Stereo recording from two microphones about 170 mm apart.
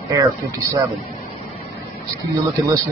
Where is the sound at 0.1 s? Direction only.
20° right (ahead or behind).